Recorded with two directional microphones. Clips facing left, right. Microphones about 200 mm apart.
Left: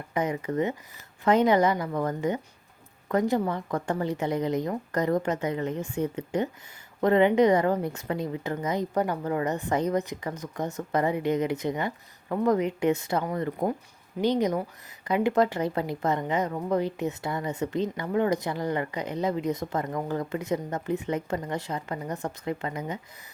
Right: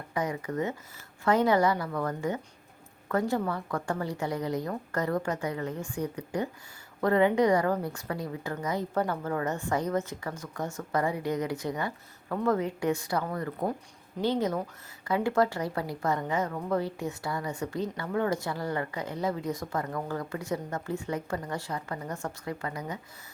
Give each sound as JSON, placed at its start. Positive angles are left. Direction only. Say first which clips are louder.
{"t": 0.1, "sound": "a woman's voice", "louder": "left 3 dB", "side_deg": 20}